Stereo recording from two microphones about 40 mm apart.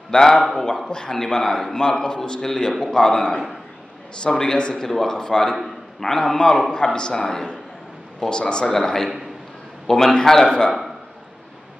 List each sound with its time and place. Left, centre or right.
0.1 s a man's voice: centre